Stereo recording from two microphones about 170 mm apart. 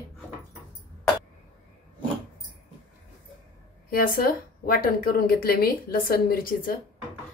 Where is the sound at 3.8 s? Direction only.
60° left (ahead or behind).